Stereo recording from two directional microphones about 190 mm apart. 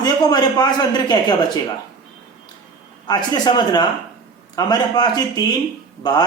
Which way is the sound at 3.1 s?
20° left (ahead or behind).